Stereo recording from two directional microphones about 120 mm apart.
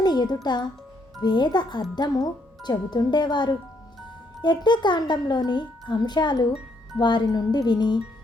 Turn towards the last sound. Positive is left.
turn(degrees=35)  # may be behind; listen again after turning